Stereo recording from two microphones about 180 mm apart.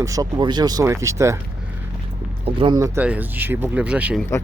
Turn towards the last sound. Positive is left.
turn(degrees=-5)  # may be behind; listen again after turning